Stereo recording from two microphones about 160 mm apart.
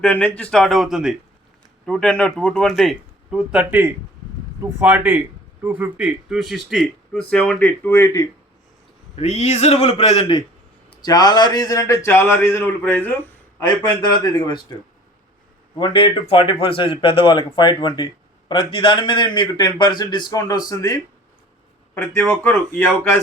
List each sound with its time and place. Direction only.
0.0 s a man's voice: 10° left (ahead or behind)
9.1 s a man's voice: 45° left (ahead or behind); by 13.2 s 10° left (ahead or behind)
13.6 s a man's voice: 25° left (ahead or behind)
15.8 s a man's voice: 30° left (ahead or behind); by 23.2 s 15° left (ahead or behind)